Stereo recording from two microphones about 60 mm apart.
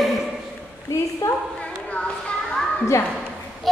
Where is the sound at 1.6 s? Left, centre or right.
Left.